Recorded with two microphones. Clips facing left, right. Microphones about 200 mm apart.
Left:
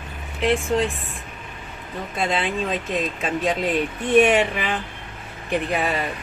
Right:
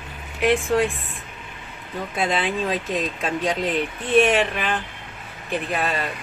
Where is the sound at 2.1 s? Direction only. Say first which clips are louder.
Even; centre (ahead or behind).